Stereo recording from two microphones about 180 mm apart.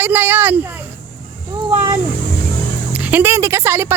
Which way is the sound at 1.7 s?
30° right (ahead or behind).